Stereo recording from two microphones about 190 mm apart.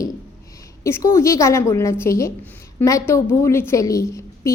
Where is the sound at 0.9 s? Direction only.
15° left (ahead or behind).